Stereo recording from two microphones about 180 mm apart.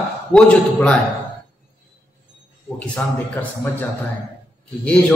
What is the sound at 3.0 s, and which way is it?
Speech, 10° left (ahead or behind).